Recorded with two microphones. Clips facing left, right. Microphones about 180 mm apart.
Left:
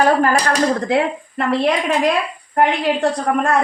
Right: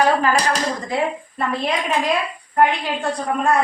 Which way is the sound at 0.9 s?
80° left.